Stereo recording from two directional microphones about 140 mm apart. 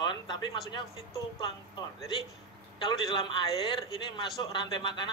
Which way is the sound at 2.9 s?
35° left (ahead or behind).